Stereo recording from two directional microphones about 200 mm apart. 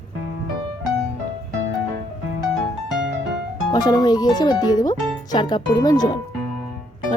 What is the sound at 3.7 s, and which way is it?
Speech, 20° left (ahead or behind).